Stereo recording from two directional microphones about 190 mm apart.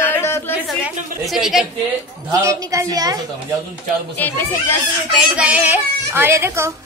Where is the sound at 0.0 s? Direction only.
10° left (ahead or behind).